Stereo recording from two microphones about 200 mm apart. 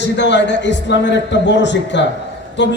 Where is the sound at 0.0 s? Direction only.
60° left (ahead or behind).